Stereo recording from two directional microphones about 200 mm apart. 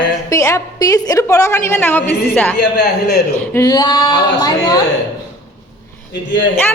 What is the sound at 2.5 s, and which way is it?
Speech, 55° left (ahead or behind).